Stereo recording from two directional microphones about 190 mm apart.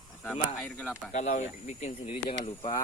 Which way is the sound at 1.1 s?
40° left (ahead or behind).